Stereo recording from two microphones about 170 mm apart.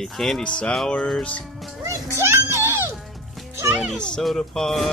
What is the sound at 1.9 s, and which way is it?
Children playing, 15° right (ahead or behind).